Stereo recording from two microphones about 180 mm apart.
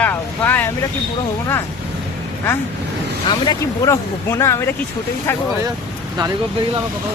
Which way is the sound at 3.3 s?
20° left (ahead or behind).